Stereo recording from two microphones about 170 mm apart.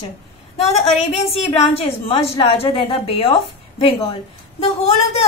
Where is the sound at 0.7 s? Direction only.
40° left (ahead or behind).